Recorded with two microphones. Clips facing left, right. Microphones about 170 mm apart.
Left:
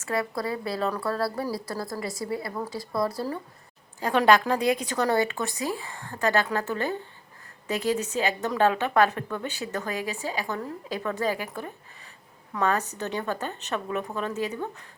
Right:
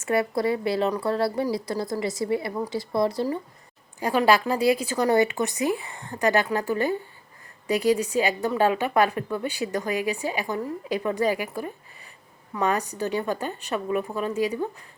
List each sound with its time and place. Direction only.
0.0 s a woman's voice: 25° right (ahead or behind)
4.0 s speech: 5° right (ahead or behind)